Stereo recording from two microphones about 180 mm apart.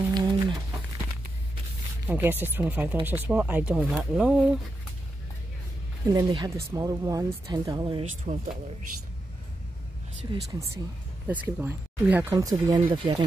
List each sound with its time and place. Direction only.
0.1 s a sound: 25° right (ahead or behind)
2.0 s speech: 10° right (ahead or behind)
6.0 s speech: 20° right (ahead or behind)
8.3 s speech: 40° right (ahead or behind)
10.3 s speech: 20° right (ahead or behind)
11.2 s speech: 10° right (ahead or behind)